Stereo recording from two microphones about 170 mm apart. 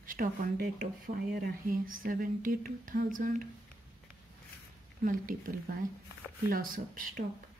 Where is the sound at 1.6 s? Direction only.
55° right (ahead or behind).